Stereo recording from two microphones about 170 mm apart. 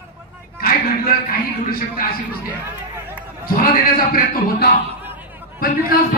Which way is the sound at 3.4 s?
55° left (ahead or behind).